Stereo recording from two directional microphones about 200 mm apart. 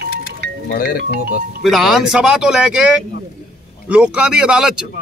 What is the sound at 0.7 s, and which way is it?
Speech, 50° left (ahead or behind).